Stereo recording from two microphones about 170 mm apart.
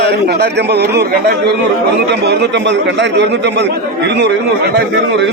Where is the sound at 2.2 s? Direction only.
80° right.